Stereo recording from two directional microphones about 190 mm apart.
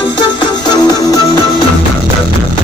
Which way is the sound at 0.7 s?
20° left (ahead or behind).